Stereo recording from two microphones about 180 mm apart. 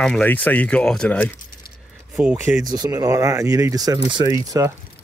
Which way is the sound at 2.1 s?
Centre (ahead or behind).